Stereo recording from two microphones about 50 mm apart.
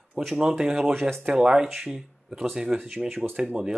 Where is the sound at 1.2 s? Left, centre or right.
Centre.